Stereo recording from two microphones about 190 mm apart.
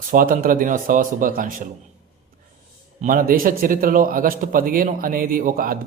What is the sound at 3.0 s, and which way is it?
A man's voice, 45° right (ahead or behind).